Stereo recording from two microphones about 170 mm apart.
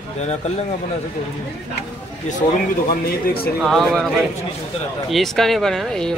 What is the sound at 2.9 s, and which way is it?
Speech, 60° left (ahead or behind).